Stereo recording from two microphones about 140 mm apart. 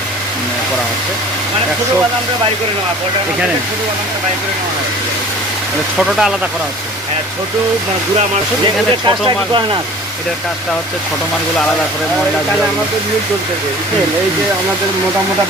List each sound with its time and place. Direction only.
6.0 s speech: centre (ahead or behind)
9.0 s speech: 35° right (ahead or behind)